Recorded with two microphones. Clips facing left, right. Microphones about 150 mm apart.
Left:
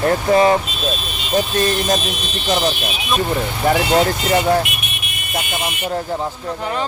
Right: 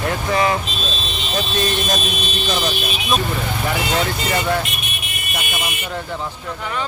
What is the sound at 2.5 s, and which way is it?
Speech, 20° left (ahead or behind).